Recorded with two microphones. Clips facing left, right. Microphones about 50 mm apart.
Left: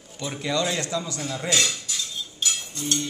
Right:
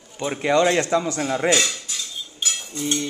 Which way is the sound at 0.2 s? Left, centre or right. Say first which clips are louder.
Right 7 dB; right.